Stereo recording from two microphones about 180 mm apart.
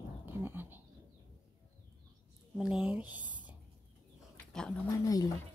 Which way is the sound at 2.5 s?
5° right (ahead or behind).